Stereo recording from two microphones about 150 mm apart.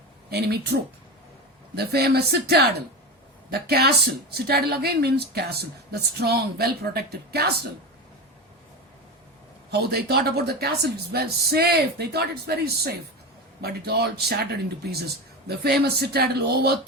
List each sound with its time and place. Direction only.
0.3 s speech: 90° right
9.7 s speech: 90° right